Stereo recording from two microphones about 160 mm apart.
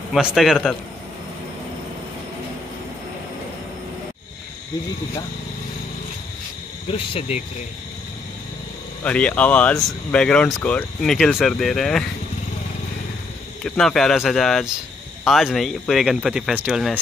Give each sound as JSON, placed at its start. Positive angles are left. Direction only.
{"t": 0.1, "sound": "speech", "side_deg": 0}
{"t": 6.9, "sound": "speech", "side_deg": 40}
{"t": 9.0, "sound": "speech", "side_deg": 10}
{"t": 13.7, "sound": "speech", "side_deg": 5}